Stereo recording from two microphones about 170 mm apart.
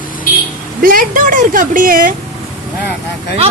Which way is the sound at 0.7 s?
55° right (ahead or behind).